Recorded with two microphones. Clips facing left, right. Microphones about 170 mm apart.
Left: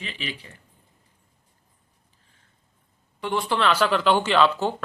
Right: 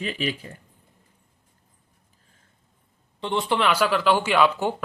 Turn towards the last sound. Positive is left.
turn(degrees=-15)  # may be behind; listen again after turning